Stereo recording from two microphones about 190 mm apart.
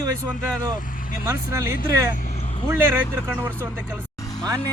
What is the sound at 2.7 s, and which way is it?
A man's voice, 10° right (ahead or behind).